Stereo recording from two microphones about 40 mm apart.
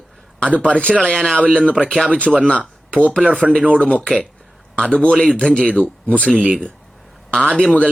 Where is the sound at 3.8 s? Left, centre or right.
Left.